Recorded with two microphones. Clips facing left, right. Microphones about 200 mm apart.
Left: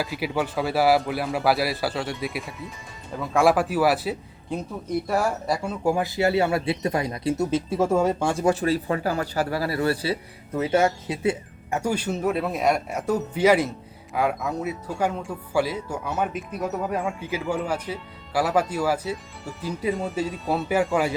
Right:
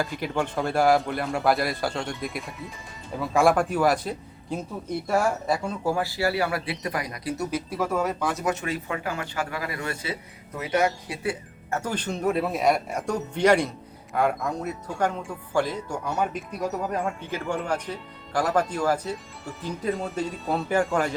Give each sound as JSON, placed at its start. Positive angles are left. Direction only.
{"t": 0.0, "sound": "speech", "side_deg": 5}
{"t": 5.9, "sound": "speech", "side_deg": 20}